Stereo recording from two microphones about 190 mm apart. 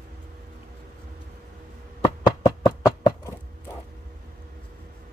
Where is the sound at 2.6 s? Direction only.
20° left (ahead or behind).